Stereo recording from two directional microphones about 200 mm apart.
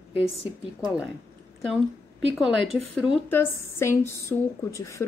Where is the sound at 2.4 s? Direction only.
Centre (ahead or behind).